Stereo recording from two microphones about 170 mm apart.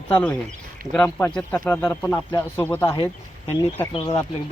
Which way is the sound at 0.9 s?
10° left (ahead or behind).